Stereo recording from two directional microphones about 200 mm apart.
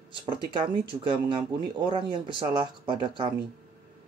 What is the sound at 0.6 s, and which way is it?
Speech, 25° right (ahead or behind).